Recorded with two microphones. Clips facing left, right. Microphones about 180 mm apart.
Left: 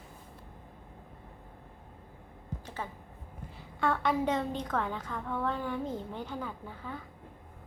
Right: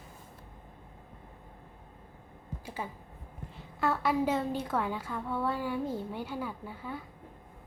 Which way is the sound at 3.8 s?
5° right (ahead or behind).